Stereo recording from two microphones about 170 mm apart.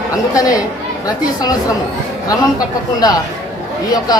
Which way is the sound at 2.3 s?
20° left (ahead or behind).